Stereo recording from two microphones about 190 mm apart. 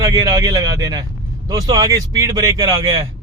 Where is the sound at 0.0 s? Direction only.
15° right (ahead or behind).